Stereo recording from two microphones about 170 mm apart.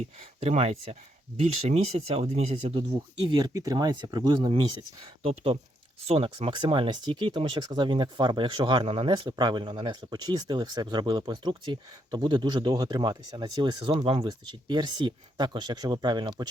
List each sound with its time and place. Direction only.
0.2 s speech: 40° right (ahead or behind)
3.2 s speech: 25° right (ahead or behind)